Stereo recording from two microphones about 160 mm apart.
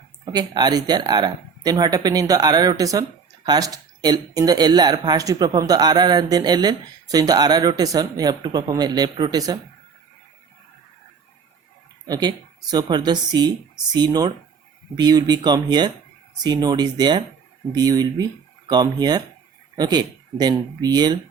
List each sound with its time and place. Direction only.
0.3 s speech: 25° right (ahead or behind)
12.0 s speech: 25° right (ahead or behind)